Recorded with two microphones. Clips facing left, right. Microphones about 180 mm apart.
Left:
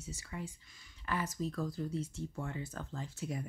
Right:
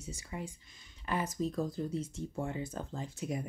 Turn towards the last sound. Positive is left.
turn(degrees=-20)  # may be behind; listen again after turning